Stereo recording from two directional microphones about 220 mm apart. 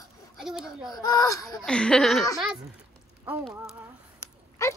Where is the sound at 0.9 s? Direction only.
15° left (ahead or behind).